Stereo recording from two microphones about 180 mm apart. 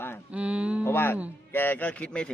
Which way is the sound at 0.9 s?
10° left (ahead or behind).